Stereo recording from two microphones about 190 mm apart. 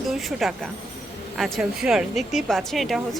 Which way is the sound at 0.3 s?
Centre (ahead or behind).